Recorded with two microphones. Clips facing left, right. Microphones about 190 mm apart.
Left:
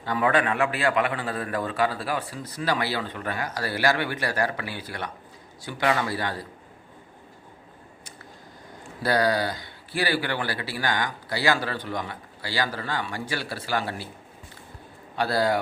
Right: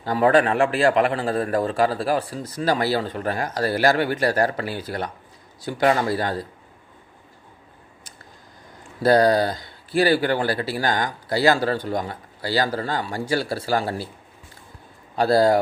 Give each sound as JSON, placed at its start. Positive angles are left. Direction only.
{"t": 0.0, "sound": "a man's voice", "side_deg": -35}
{"t": 9.0, "sound": "a man's voice", "side_deg": -45}
{"t": 15.1, "sound": "a man's voice", "side_deg": -40}